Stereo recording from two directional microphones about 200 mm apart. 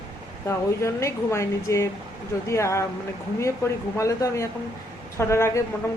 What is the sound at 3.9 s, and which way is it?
Speech, 15° left (ahead or behind).